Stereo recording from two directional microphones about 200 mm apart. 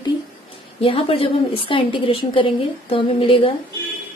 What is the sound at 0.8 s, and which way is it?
A woman's voice, 25° left (ahead or behind).